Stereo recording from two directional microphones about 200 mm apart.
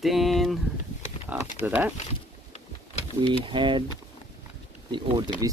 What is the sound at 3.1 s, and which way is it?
Speech, 25° right (ahead or behind).